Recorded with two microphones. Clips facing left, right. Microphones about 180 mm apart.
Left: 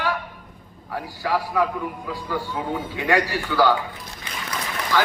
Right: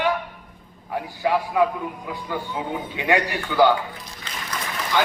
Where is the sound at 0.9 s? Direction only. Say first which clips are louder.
Right 2 dB; 20° right (ahead or behind).